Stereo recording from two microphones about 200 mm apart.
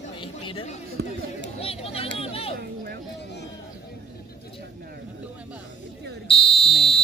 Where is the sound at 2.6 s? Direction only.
50° right (ahead or behind).